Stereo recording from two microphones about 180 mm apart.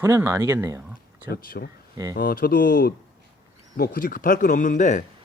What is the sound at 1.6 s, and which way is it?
Speech, 60° left (ahead or behind).